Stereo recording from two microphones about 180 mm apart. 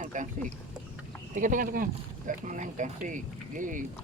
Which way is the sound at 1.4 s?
50° right (ahead or behind).